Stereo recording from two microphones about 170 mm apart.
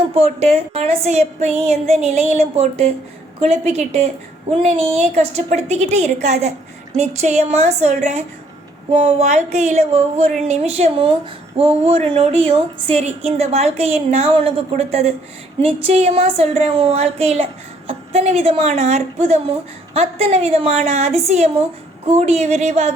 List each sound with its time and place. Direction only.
0.1 s speech: 40° right (ahead or behind)